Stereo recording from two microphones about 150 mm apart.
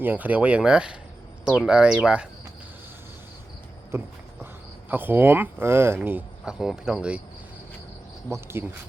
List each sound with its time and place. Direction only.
0.0 s speech: 10° right (ahead or behind)
4.9 s speech: 10° right (ahead or behind)
8.3 s speech: 15° right (ahead or behind)